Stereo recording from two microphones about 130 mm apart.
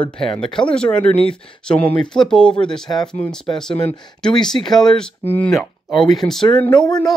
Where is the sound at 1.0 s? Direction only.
45° left (ahead or behind).